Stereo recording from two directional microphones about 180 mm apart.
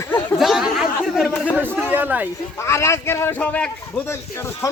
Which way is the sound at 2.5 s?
15° left (ahead or behind).